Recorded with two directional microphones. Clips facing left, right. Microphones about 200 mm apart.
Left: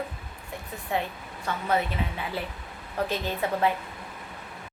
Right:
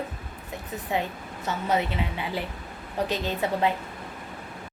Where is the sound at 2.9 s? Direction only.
20° right (ahead or behind).